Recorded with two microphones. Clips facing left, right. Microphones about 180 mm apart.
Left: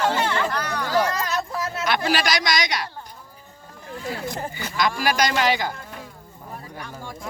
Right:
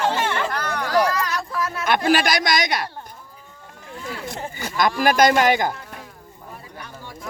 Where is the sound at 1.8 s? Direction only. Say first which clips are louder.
Right 4 dB; 50° right (ahead or behind).